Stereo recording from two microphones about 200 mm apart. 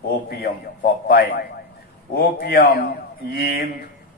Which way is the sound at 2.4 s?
55° left (ahead or behind).